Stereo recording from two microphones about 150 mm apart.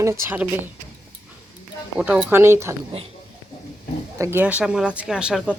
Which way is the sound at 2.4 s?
20° right (ahead or behind).